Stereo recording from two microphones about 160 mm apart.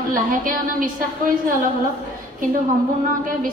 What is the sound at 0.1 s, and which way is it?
Speech, 60° right (ahead or behind).